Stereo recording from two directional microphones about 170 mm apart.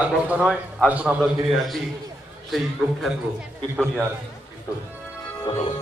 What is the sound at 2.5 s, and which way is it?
Speech, centre (ahead or behind).